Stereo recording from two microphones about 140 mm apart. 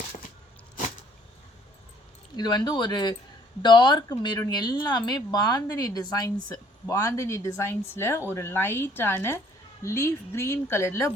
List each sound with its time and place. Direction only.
2.3 s a woman's voice: 30° left (ahead or behind)